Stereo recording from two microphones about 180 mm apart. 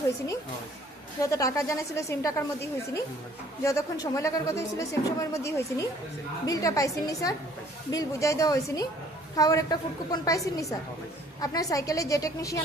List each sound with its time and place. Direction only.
1.2 s a woman's voice: 20° left (ahead or behind)